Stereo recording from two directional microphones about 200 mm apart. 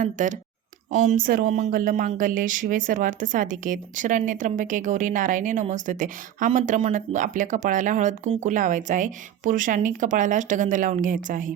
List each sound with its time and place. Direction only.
0.0 s speech: 40° right (ahead or behind)